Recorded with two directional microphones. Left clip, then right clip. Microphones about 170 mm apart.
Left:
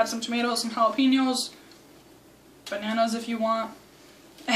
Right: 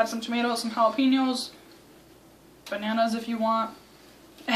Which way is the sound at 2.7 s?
5° right (ahead or behind).